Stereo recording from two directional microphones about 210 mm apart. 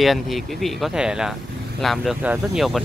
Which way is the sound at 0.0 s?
Centre (ahead or behind).